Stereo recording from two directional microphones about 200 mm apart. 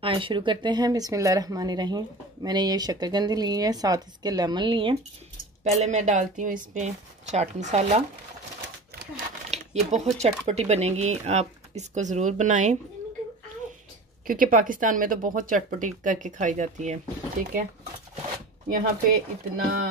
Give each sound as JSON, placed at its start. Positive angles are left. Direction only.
{"t": 0.0, "sound": "speech", "side_deg": -25}
{"t": 9.5, "sound": "a sound", "side_deg": -35}
{"t": 10.1, "sound": "speech", "side_deg": -35}
{"t": 14.2, "sound": "speech", "side_deg": -45}
{"t": 18.7, "sound": "speech", "side_deg": -45}